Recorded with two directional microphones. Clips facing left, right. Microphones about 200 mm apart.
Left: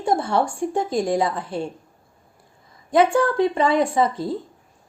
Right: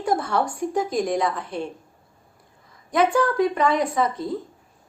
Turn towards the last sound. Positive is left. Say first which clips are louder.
# left 3 dB
turn(degrees=30)  # may be behind; listen again after turning